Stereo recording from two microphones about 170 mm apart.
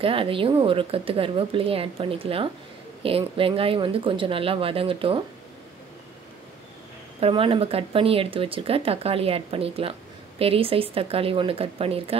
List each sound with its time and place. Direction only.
0.0 s speech: 30° right (ahead or behind)
7.2 s speech: 35° right (ahead or behind)